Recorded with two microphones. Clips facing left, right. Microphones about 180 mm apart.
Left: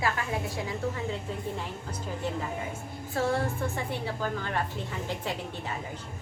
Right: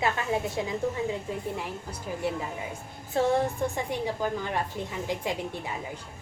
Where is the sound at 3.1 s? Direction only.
20° right (ahead or behind).